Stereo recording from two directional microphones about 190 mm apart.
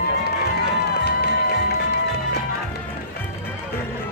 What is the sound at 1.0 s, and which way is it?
Music, 55° left (ahead or behind).